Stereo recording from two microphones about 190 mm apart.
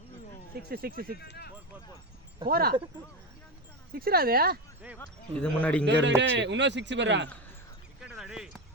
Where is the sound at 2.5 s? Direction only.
55° right (ahead or behind).